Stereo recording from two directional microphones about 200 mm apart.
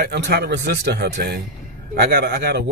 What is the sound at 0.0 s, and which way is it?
A man's voice, 55° right (ahead or behind).